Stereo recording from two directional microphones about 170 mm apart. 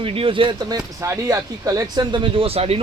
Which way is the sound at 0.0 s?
35° right (ahead or behind).